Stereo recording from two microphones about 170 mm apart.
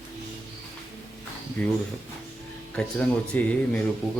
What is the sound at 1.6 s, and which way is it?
Speech, 5° left (ahead or behind).